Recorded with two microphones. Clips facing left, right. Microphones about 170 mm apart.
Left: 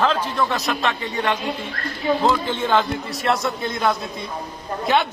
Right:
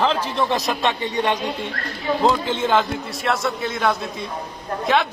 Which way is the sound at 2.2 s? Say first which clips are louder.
Right 1 dB; 5° right (ahead or behind).